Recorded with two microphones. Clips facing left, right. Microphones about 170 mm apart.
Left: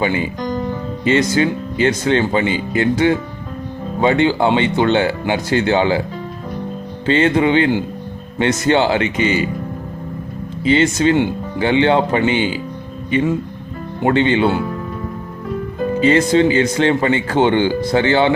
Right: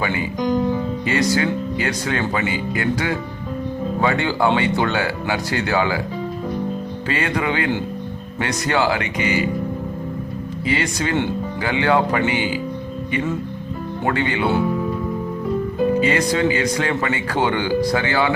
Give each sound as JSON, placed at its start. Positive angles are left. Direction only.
{"t": 0.4, "sound": "music", "side_deg": -10}
{"t": 1.0, "sound": "speech", "side_deg": 20}
{"t": 7.1, "sound": "speech", "side_deg": 25}
{"t": 10.7, "sound": "speech", "side_deg": 25}
{"t": 14.0, "sound": "speech", "side_deg": 25}
{"t": 16.0, "sound": "speech", "side_deg": 25}